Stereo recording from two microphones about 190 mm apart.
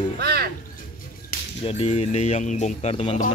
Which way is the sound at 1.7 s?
35° left (ahead or behind).